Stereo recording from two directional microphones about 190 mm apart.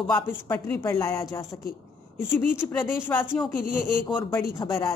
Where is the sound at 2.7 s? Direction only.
10° left (ahead or behind).